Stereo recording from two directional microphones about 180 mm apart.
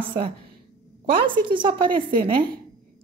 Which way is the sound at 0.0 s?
30° right (ahead or behind).